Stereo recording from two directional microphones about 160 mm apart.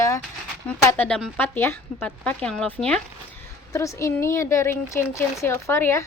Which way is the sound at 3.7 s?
20° left (ahead or behind).